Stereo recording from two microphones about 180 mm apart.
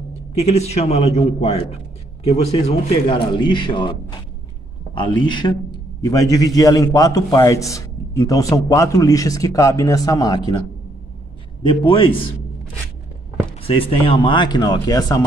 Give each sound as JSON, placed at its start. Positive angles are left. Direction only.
{"t": 0.4, "sound": "a man's voice", "side_deg": 35}
{"t": 4.9, "sound": "a man's voice", "side_deg": 25}
{"t": 11.7, "sound": "a man's voice", "side_deg": 30}
{"t": 13.6, "sound": "a man's voice", "side_deg": 30}